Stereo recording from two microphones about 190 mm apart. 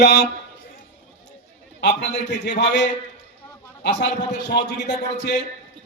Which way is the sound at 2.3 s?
65° left (ahead or behind).